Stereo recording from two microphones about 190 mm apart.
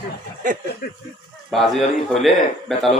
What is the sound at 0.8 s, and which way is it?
Speech, 55° left (ahead or behind).